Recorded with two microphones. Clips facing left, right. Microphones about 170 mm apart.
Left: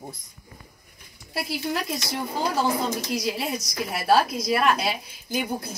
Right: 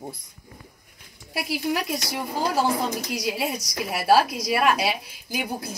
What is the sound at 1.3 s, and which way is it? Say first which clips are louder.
Speech: right 2 dB; 10° right (ahead or behind).